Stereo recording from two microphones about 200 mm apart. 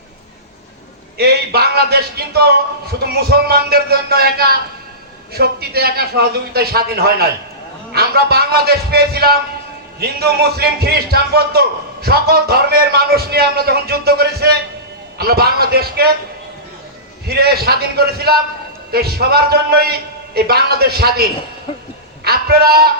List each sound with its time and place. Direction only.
1.2 s a man's voice: 50° right (ahead or behind)
17.2 s a man's voice: 50° right (ahead or behind)